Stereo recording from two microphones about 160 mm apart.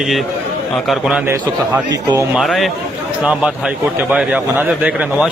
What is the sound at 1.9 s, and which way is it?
Speech, 20° right (ahead or behind).